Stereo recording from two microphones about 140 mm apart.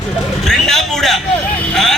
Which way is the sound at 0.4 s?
Centre (ahead or behind).